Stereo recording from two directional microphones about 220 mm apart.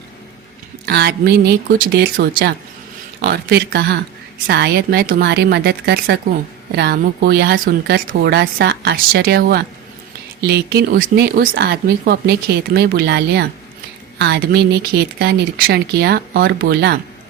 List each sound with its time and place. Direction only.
0.9 s speech: 45° right (ahead or behind)